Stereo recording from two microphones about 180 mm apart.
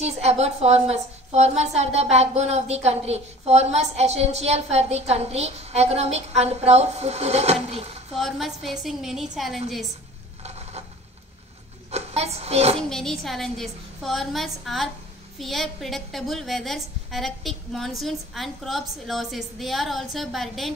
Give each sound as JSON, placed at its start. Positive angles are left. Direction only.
{"t": 0.0, "sound": "a woman's voice", "side_deg": -35}
{"t": 8.1, "sound": "a woman's voice", "side_deg": 0}
{"t": 10.4, "sound": "stir", "side_deg": -35}
{"t": 11.9, "sound": "speech", "side_deg": -35}
{"t": 12.9, "sound": "a woman's voice", "side_deg": 0}